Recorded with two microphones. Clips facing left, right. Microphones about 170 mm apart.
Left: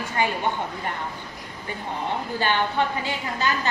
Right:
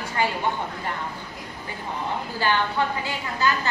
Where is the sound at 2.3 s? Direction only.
20° left (ahead or behind).